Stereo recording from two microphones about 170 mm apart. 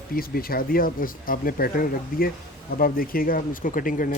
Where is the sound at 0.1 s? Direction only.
60° left (ahead or behind).